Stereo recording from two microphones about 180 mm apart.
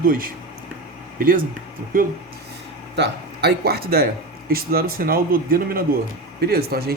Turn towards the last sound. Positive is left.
turn(degrees=-60)  # may be behind; listen again after turning